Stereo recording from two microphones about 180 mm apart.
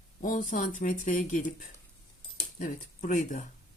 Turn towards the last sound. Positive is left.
turn(degrees=45)  # may be behind; listen again after turning